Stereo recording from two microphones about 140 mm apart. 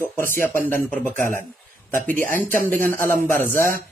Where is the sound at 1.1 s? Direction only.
70° right (ahead or behind).